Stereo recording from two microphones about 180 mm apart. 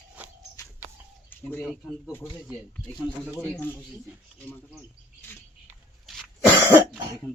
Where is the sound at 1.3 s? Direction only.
10° left (ahead or behind).